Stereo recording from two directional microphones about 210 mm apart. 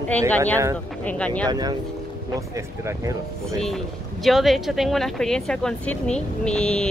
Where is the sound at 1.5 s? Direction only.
20° right (ahead or behind).